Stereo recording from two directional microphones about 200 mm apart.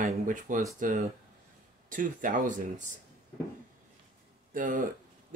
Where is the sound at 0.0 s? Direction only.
40° right (ahead or behind).